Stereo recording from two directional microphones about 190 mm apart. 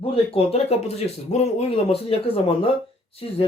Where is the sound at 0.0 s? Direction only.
30° left (ahead or behind).